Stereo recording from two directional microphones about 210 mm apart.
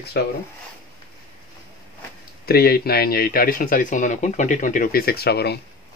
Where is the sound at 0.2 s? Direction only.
50° left (ahead or behind).